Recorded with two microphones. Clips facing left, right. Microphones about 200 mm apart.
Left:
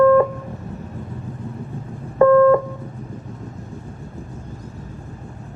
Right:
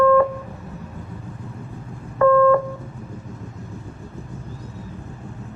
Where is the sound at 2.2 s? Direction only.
30° left (ahead or behind).